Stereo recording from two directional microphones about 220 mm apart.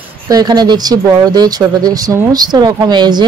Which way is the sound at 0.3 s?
20° right (ahead or behind).